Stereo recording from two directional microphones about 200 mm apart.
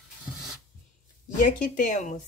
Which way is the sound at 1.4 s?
40° left (ahead or behind).